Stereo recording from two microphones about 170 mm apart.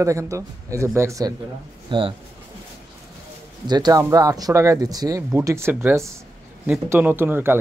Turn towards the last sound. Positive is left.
turn(degrees=-10)  # may be behind; listen again after turning